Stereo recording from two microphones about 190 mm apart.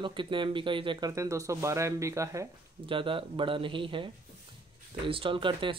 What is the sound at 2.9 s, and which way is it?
Speech, 25° right (ahead or behind).